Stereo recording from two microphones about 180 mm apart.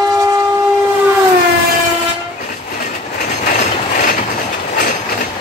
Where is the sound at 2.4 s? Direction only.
50° left (ahead or behind).